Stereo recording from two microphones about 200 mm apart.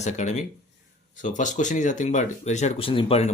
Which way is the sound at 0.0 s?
35° left (ahead or behind).